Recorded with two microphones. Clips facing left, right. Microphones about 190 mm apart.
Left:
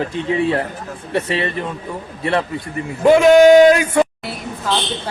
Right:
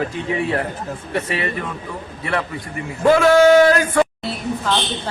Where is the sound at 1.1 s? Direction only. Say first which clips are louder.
Left 3 dB; 25° left (ahead or behind).